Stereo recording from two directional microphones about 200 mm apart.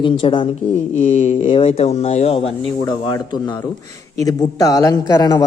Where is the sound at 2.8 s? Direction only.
20° left (ahead or behind).